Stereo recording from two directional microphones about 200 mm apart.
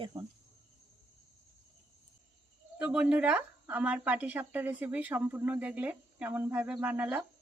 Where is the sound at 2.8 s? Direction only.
5° right (ahead or behind).